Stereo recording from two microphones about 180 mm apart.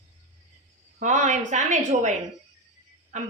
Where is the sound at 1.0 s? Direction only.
40° right (ahead or behind).